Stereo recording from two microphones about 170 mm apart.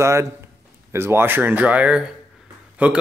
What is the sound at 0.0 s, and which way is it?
Speech, 15° right (ahead or behind).